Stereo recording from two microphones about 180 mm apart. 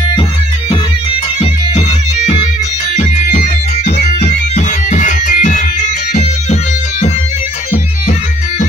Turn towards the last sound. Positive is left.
turn(degrees=40)  # may be behind; listen again after turning